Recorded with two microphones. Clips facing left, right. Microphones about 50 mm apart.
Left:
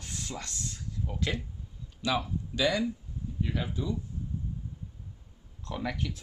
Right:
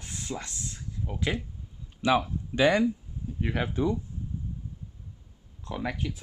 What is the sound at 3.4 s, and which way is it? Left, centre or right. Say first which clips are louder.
Speech: right 6 dB; right.